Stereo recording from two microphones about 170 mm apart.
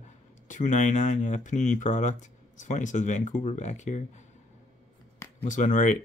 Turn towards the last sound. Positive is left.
turn(degrees=45)  # may be behind; listen again after turning